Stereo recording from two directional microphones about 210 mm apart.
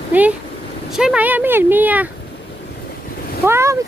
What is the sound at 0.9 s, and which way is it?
Speech, 5° right (ahead or behind).